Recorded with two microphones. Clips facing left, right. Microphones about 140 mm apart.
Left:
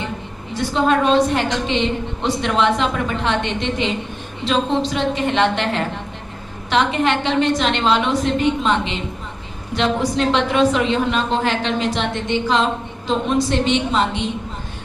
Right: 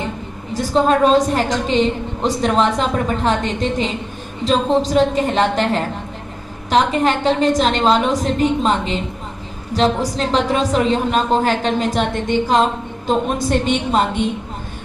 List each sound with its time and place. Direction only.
0.5 s a woman's voice: 40° right (ahead or behind)